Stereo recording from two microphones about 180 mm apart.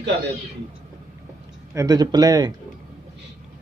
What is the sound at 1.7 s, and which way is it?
Speech, 20° right (ahead or behind).